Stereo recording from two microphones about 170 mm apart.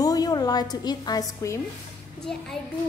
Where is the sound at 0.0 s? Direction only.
20° left (ahead or behind).